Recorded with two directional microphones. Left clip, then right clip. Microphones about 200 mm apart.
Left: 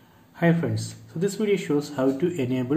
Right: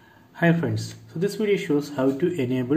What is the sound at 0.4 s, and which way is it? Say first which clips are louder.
A man's voice: right 1 dB; 15° right (ahead or behind).